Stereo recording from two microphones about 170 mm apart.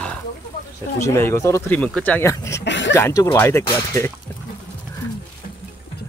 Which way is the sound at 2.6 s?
90° left.